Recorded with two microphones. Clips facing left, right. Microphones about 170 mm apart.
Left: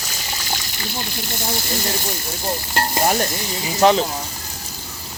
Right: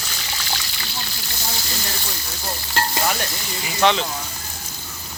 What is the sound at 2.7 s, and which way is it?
Stir, 45° left (ahead or behind).